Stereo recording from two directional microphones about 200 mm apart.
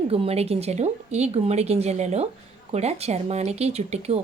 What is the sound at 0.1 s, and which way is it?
Speech, 30° right (ahead or behind).